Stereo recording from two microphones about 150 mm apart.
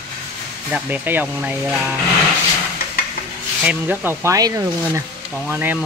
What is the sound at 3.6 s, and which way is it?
Speech, 10° right (ahead or behind).